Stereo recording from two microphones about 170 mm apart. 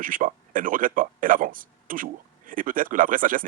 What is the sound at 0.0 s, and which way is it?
Speech, 50° right (ahead or behind).